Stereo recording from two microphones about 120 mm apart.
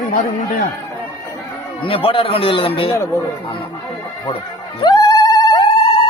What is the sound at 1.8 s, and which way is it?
A man's voice, 50° left (ahead or behind).